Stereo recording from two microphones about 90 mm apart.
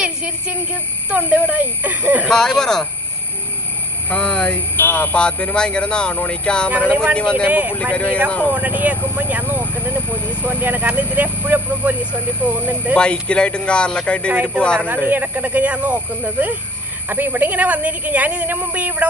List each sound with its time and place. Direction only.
0.0 s a sound: 10° right (ahead or behind)
1.1 s speech: 15° right (ahead or behind)
2.2 s speech: 5° left (ahead or behind)
4.1 s a man's voice: 10° left (ahead or behind)
4.7 s a man's voice: 20° left (ahead or behind)
6.7 s speech: 15° right (ahead or behind)
7.2 s a man's voice: 10° left (ahead or behind)
7.4 s speech: 15° right (ahead or behind)
7.7 s a man's voice: 15° left (ahead or behind)
8.5 s speech: 15° right (ahead or behind)
12.9 s a man's voice: 10° left (ahead or behind)
14.3 s speech: 10° right (ahead or behind)